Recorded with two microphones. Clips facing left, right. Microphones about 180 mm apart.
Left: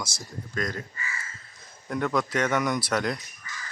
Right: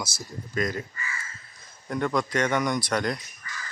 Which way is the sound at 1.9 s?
Centre (ahead or behind).